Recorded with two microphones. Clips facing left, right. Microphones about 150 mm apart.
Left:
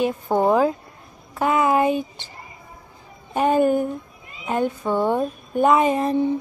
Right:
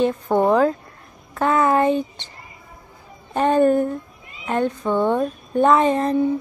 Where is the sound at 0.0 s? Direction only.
10° left (ahead or behind).